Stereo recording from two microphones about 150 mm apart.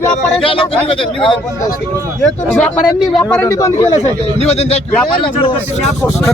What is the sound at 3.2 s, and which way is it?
Speech, 15° left (ahead or behind).